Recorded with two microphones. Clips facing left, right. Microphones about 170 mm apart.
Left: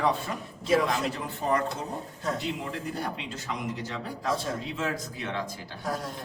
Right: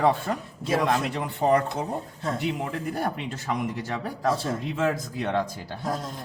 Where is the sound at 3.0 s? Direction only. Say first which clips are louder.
Right 5 dB; 55° right (ahead or behind).